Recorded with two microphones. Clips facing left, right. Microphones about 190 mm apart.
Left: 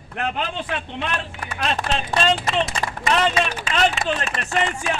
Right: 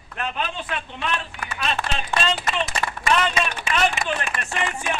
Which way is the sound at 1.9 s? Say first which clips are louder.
Left 4 dB; 35° left (ahead or behind).